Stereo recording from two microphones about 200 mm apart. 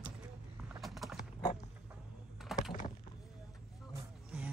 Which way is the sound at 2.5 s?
Centre (ahead or behind).